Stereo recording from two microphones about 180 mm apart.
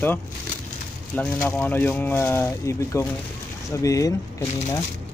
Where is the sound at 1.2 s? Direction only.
10° left (ahead or behind).